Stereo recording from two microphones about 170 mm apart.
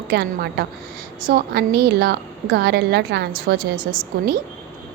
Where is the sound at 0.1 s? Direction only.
70° right (ahead or behind).